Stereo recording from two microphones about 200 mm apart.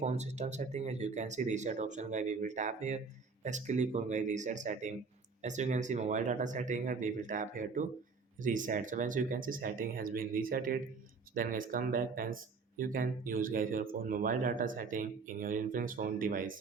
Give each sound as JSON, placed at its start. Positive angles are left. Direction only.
{"t": 0.0, "sound": "speech", "side_deg": -35}